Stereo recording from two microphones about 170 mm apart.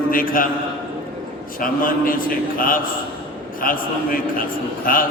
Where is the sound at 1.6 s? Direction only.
55° left (ahead or behind).